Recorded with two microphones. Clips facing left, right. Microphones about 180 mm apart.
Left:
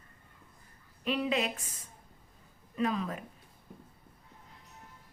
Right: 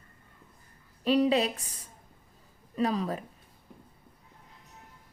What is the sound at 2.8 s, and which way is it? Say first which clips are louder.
Speech: right 3 dB; 35° right (ahead or behind).